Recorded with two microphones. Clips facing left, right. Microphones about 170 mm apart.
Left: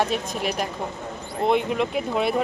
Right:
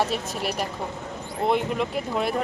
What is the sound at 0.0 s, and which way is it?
Speech, 5° right (ahead or behind).